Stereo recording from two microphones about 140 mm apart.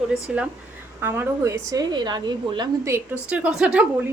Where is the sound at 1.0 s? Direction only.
15° right (ahead or behind); by 2.7 s 30° right (ahead or behind).